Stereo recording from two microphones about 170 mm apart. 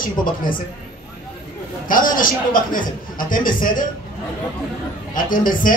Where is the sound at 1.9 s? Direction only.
55° left (ahead or behind).